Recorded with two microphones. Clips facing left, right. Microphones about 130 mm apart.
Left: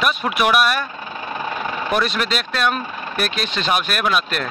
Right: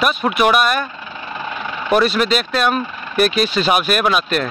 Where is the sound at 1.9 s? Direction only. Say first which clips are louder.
Right 7 dB; centre (ahead or behind).